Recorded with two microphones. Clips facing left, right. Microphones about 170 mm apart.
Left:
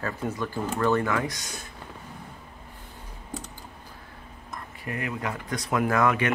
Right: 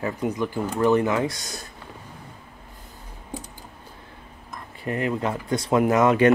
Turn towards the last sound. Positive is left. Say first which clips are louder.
# right 5 dB
turn(degrees=-20)  # may be behind; listen again after turning